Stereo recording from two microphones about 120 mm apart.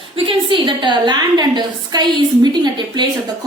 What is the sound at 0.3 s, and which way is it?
A woman's voice, 40° right (ahead or behind).